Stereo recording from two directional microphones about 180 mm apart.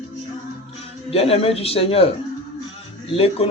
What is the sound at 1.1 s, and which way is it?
Speech, 35° left (ahead or behind).